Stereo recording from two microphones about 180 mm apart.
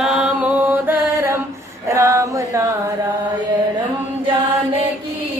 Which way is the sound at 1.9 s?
15° right (ahead or behind).